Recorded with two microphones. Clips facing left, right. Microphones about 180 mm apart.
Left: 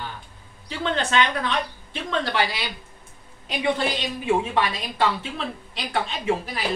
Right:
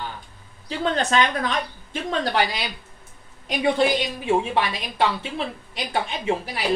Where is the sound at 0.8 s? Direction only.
40° right (ahead or behind).